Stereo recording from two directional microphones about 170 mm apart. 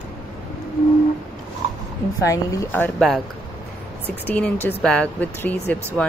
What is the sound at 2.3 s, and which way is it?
Speech, 15° left (ahead or behind).